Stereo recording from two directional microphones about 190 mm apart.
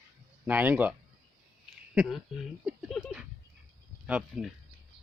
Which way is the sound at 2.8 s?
5° right (ahead or behind).